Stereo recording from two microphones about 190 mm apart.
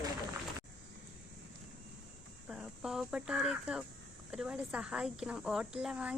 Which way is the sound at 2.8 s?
Centre (ahead or behind).